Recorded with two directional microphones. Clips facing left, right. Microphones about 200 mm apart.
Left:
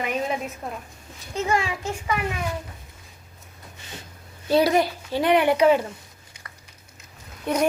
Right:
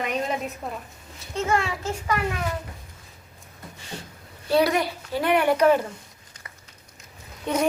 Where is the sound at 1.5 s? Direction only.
15° left (ahead or behind).